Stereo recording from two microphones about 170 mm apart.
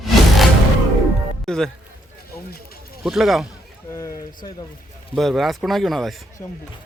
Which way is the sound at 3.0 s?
Centre (ahead or behind).